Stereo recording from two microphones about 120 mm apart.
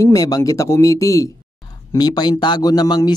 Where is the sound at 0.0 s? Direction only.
30° left (ahead or behind).